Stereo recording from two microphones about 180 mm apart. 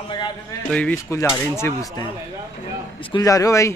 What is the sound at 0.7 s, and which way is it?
A man's voice, 10° left (ahead or behind).